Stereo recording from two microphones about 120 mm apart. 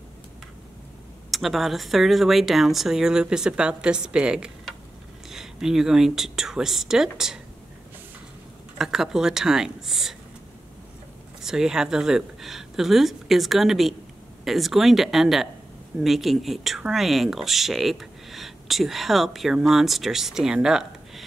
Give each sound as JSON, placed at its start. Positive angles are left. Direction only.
{"t": 1.3, "sound": "speech", "side_deg": 0}
{"t": 8.7, "sound": "speech", "side_deg": -5}
{"t": 11.4, "sound": "speech", "side_deg": -5}